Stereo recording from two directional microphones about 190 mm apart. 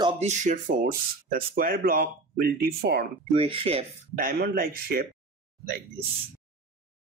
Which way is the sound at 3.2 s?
30° right (ahead or behind).